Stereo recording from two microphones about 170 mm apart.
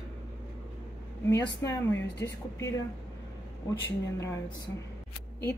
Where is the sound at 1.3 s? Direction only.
15° left (ahead or behind).